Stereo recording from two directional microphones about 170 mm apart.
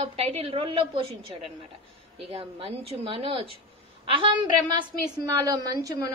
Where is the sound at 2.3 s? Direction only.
35° right (ahead or behind).